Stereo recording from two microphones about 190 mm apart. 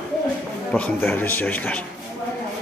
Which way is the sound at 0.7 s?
5° left (ahead or behind).